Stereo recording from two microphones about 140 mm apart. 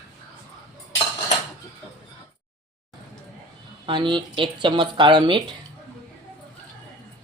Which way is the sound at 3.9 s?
35° right (ahead or behind).